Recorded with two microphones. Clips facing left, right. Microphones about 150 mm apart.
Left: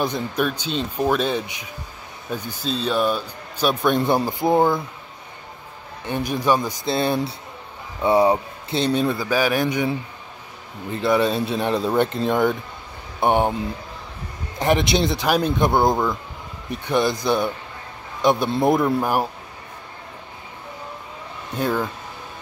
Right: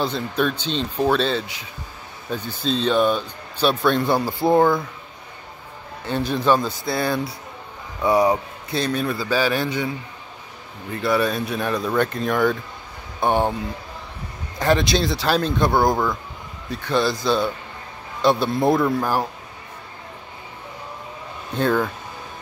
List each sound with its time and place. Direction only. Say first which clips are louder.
0.0 s a man's voice: even; 15° left (ahead or behind)
6.0 s a man's voice: right 1 dB; 15° left (ahead or behind)
10.9 s a man's voice: left 2 dB; 20° left (ahead or behind)
14.6 s a man's voice: even; 20° left (ahead or behind)
21.5 s speech: right 3 dB; 10° left (ahead or behind)